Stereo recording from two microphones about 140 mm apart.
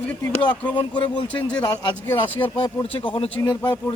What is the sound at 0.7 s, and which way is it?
Speech, 35° left (ahead or behind).